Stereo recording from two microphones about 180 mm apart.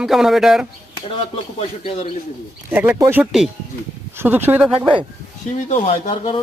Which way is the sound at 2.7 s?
10° right (ahead or behind).